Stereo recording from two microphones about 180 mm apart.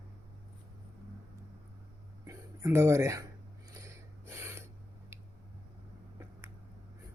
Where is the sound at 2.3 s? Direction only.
15° right (ahead or behind).